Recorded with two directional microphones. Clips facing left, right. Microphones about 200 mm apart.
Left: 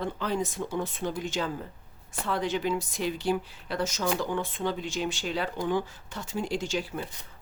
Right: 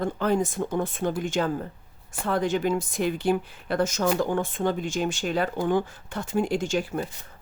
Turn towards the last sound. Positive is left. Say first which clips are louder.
# right 5 dB
turn(degrees=-50)  # may be behind; listen again after turning